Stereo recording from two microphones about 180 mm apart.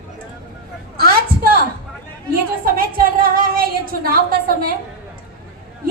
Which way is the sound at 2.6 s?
55° right (ahead or behind).